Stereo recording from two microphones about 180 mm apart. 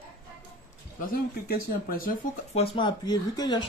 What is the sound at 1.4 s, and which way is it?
Speech, 55° left (ahead or behind).